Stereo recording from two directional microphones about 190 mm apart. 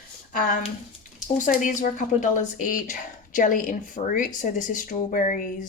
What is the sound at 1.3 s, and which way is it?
Speech, 40° left (ahead or behind).